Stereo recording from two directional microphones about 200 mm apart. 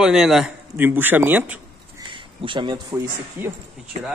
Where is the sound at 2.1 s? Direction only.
25° right (ahead or behind).